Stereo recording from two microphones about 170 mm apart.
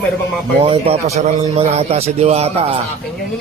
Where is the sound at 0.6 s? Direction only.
35° right (ahead or behind).